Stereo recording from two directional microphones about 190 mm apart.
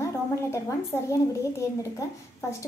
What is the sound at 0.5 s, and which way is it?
A woman's voice, 15° left (ahead or behind).